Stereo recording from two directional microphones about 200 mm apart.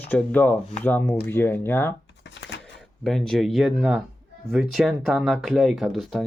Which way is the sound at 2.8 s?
Centre (ahead or behind).